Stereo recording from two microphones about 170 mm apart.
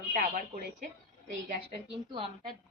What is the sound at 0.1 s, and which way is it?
Speech, 55° right (ahead or behind).